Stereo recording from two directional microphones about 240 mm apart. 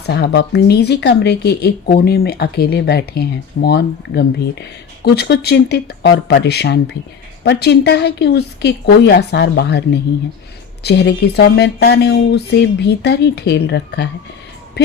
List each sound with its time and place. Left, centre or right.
0.0 s speech: left